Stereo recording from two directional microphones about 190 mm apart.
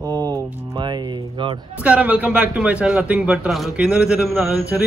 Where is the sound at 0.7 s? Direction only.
25° right (ahead or behind).